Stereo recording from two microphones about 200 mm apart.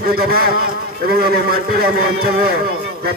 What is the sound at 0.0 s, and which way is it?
A man's voice, 50° right (ahead or behind).